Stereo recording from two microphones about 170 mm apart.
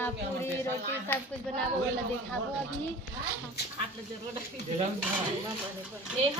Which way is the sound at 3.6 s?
70° left (ahead or behind).